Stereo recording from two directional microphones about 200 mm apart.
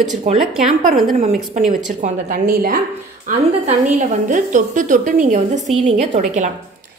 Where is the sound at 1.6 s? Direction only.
40° right (ahead or behind).